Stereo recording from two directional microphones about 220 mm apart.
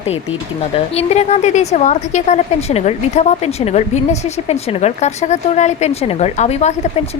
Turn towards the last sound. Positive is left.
turn(degrees=30)  # may be behind; listen again after turning